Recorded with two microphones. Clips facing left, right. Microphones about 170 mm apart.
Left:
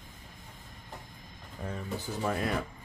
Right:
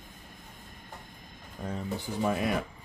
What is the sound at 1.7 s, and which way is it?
Speech, 15° right (ahead or behind).